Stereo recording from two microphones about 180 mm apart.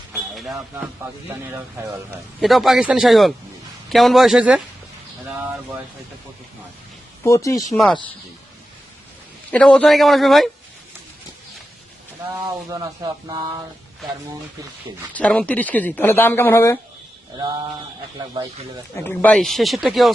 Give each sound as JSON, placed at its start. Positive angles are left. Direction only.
{"t": 0.1, "sound": "music", "side_deg": 0}
{"t": 1.5, "sound": "speech", "side_deg": -10}
{"t": 2.4, "sound": "speech", "side_deg": 0}
{"t": 7.3, "sound": "speech", "side_deg": 15}
{"t": 7.7, "sound": "speech", "side_deg": 0}
{"t": 9.5, "sound": "speech", "side_deg": 5}
{"t": 13.2, "sound": "a sound", "side_deg": -20}
{"t": 15.1, "sound": "speech", "side_deg": 5}
{"t": 17.3, "sound": "a sound", "side_deg": -25}
{"t": 18.9, "sound": "speech", "side_deg": 10}